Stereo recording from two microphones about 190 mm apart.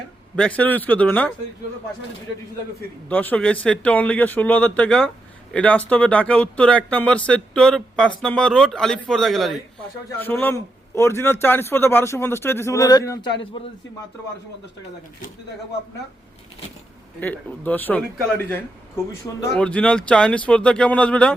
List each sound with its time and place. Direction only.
0.3 s a man's voice: 5° left (ahead or behind)
3.1 s a man's voice: 10° left (ahead or behind)
17.2 s a man's voice: 10° left (ahead or behind)
19.5 s speech: 5° left (ahead or behind)